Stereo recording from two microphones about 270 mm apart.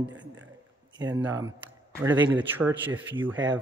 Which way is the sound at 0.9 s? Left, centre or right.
Centre.